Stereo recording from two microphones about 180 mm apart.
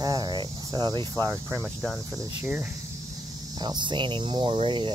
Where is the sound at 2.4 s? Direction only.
10° right (ahead or behind).